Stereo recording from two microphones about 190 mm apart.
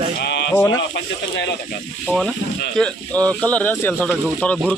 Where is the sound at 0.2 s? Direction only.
65° left (ahead or behind).